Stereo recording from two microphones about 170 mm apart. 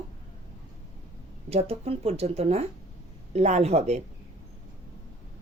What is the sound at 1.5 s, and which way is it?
Speech, 35° right (ahead or behind).